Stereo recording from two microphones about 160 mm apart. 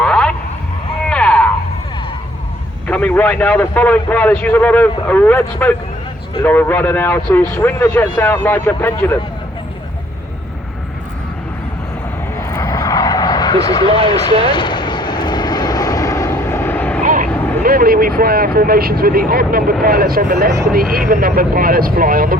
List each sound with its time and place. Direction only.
0.0 s a sound: 5° left (ahead or behind)
2.8 s a man's voice: 10° left (ahead or behind)
12.4 s vehicle: 20° left (ahead or behind)
14.1 s speech: 30° left (ahead or behind)
14.5 s vehicle: 30° left (ahead or behind); by 17.0 s 10° left (ahead or behind)
17.0 s vehicle: 55° right (ahead or behind)
17.6 s speech: 65° right (ahead or behind)